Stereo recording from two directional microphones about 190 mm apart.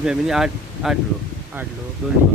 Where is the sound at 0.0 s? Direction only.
5° right (ahead or behind).